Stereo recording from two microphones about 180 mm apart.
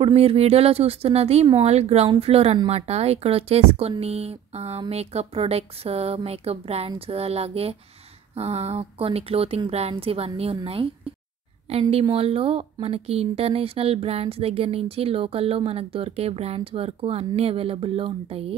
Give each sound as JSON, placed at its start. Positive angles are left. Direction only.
{"t": 0.0, "sound": "speech", "side_deg": -35}
{"t": 11.9, "sound": "speech", "side_deg": -30}